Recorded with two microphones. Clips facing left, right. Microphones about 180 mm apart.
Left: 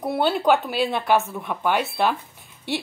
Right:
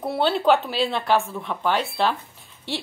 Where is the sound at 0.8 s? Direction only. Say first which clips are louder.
Left 1 dB; 15° left (ahead or behind).